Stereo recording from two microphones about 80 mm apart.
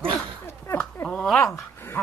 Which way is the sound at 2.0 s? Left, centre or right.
Left.